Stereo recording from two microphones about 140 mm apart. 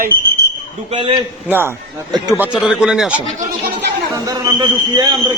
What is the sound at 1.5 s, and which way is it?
A man's voice, 15° right (ahead or behind).